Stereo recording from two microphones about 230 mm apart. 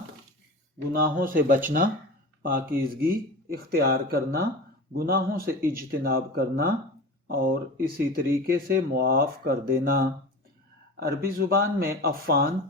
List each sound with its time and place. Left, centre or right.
0.9 s speech: right
11.3 s speech: right